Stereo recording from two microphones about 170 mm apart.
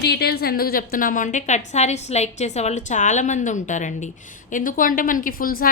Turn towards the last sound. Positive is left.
turn(degrees=60)  # may be behind; listen again after turning